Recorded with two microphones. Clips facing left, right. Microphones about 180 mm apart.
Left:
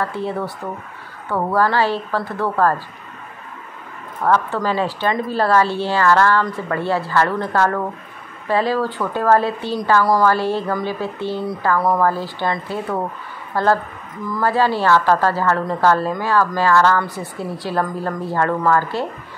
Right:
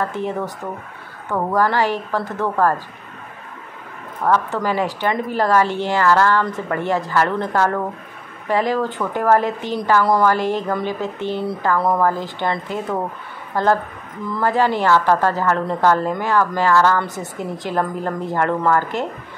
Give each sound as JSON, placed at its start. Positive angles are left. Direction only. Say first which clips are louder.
{"t": 0.0, "sound": "a woman's voice", "louder": "even", "side_deg": -20}
{"t": 4.2, "sound": "a woman's voice", "louder": "left 1 dB", "side_deg": -15}